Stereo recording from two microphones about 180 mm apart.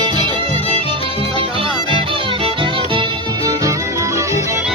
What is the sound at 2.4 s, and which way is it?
Music, 25° right (ahead or behind).